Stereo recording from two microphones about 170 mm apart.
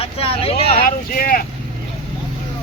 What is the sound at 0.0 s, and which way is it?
Speech, 35° left (ahead or behind).